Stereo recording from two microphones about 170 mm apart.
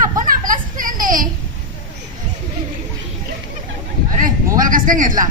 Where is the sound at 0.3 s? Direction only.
55° right (ahead or behind).